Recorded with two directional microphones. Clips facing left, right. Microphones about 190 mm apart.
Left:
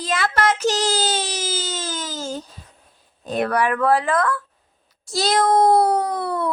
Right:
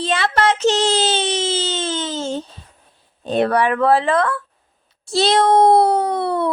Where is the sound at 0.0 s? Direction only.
30° right (ahead or behind).